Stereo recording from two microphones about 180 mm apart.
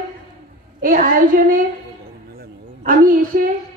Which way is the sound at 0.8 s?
50° right (ahead or behind).